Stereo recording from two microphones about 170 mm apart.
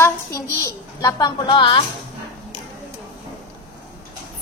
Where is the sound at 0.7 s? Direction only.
20° left (ahead or behind).